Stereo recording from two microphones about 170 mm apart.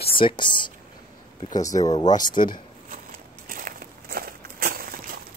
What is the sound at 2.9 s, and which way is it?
Crackle, 55° right (ahead or behind).